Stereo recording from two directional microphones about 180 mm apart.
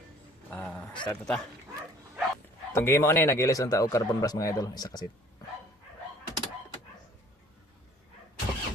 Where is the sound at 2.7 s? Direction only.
15° left (ahead or behind).